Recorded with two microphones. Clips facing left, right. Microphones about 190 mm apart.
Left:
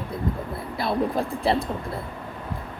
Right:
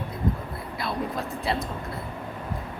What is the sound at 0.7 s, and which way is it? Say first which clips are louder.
Speech: left 6 dB; 30° left (ahead or behind).